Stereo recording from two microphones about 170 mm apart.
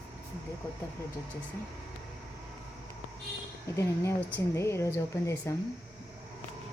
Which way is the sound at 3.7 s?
15° left (ahead or behind).